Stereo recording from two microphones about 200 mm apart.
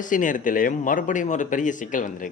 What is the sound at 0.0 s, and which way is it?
Speech, 40° left (ahead or behind).